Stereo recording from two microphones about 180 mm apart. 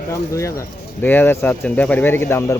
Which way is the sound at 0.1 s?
15° left (ahead or behind).